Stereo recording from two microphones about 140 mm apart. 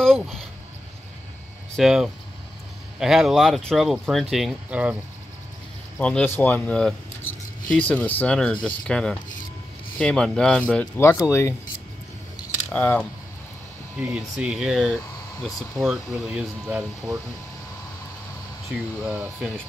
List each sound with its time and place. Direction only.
0.0 s a sound: centre (ahead or behind)
1.8 s speech: centre (ahead or behind)
5.9 s speech: 10° left (ahead or behind)
12.7 s speech: 15° left (ahead or behind)
13.9 s speech: 10° right (ahead or behind)
18.9 s speech: 15° right (ahead or behind)